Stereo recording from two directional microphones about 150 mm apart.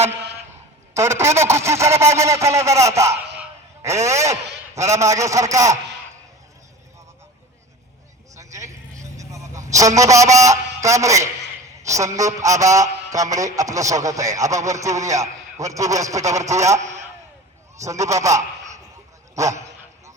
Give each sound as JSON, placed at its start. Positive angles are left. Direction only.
{"t": 0.9, "sound": "a man's voice", "side_deg": -15}
{"t": 8.4, "sound": "vehicle", "side_deg": -20}
{"t": 10.4, "sound": "a man's voice", "side_deg": -20}